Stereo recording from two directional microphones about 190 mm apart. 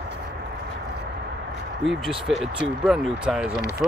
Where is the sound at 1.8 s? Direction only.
Centre (ahead or behind).